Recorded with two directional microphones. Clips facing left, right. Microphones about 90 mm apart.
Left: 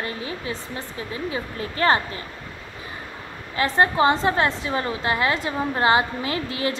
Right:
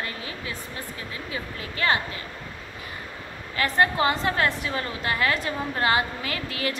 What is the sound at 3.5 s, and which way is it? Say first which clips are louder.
A woman's voice: left 2 dB; 25° left (ahead or behind).